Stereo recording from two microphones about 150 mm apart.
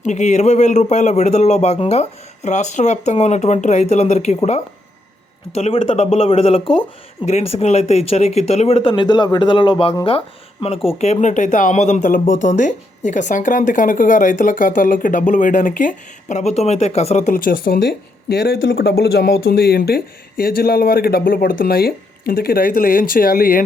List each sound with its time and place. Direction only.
0.0 s speech: 50° left (ahead or behind)
5.5 s speech: 40° left (ahead or behind)
17.3 s speech: 70° left (ahead or behind)